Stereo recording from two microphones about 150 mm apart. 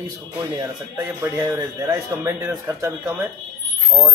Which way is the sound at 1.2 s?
20° right (ahead or behind).